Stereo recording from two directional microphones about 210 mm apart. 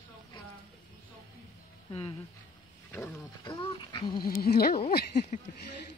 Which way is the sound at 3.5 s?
25° left (ahead or behind).